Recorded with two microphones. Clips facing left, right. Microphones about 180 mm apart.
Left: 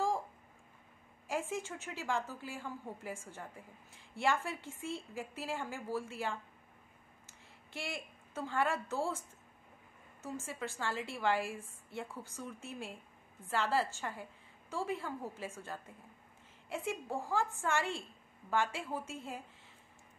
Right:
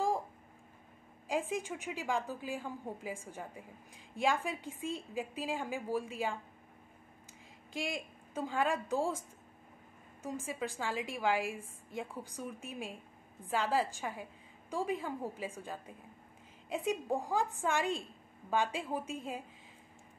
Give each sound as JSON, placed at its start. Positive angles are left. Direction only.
{"t": 1.2, "sound": "a woman's voice", "side_deg": -15}
{"t": 10.2, "sound": "a woman's voice", "side_deg": -10}